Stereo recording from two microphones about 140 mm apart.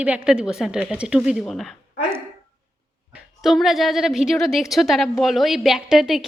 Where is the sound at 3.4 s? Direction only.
Centre (ahead or behind).